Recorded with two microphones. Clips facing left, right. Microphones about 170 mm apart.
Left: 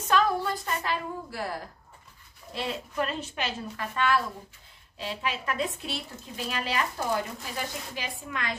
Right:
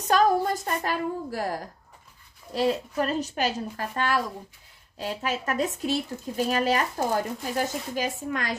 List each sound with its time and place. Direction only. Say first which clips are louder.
0.1 s a woman's voice: right 4 dB; 40° right (ahead or behind)